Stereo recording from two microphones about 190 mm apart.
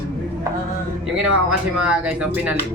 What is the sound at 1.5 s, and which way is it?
Speech, 5° right (ahead or behind).